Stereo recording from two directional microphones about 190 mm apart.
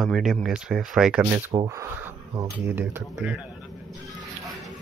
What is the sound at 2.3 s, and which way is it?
Speech, 10° right (ahead or behind).